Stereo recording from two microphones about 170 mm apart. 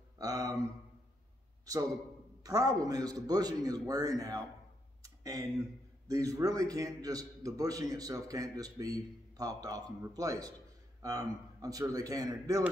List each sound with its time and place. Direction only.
0.2 s a man's voice: 20° right (ahead or behind)
2.4 s a man's voice: 20° right (ahead or behind)
5.0 s a sound: 20° right (ahead or behind)
6.0 s a man's voice: 20° right (ahead or behind)